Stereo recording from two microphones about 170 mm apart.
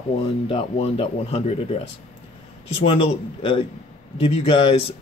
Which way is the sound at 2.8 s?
40° left (ahead or behind).